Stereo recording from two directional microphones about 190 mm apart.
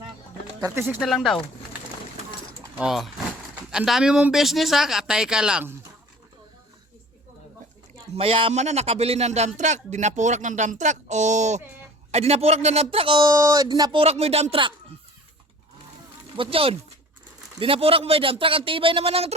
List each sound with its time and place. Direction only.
0.6 s speech: 10° right (ahead or behind)
0.9 s speech: centre (ahead or behind)
2.7 s speech: centre (ahead or behind)
8.1 s speech: 30° right (ahead or behind)
16.4 s speech: 30° right (ahead or behind)